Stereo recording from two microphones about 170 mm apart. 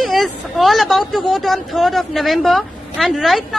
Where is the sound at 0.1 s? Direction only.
Centre (ahead or behind).